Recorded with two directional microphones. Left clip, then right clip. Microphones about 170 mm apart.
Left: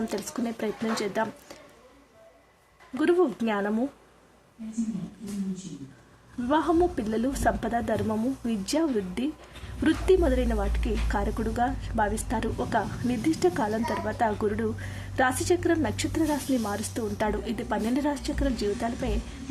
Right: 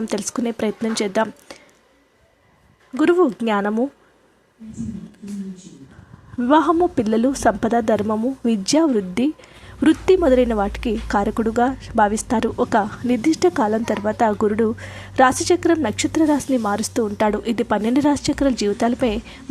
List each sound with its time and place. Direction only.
0.1 s a woman's voice: 40° right (ahead or behind)
3.0 s a woman's voice: 35° right (ahead or behind)
6.5 s a woman's voice: 35° right (ahead or behind)